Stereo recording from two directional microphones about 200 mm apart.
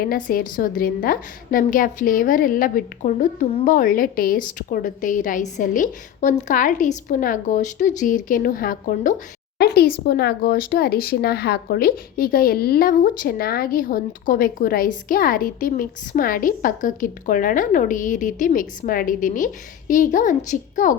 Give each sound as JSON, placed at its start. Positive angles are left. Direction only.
{"t": 0.0, "sound": "a woman's voice", "side_deg": 45}